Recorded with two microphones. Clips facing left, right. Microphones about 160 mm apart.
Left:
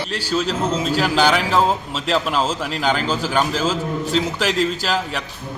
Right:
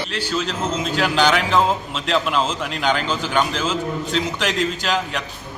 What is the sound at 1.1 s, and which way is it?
Speech, 5° left (ahead or behind).